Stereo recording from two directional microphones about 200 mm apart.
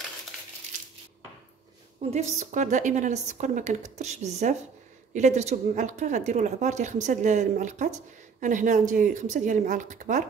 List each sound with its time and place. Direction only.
2.0 s a woman's voice: 35° right (ahead or behind)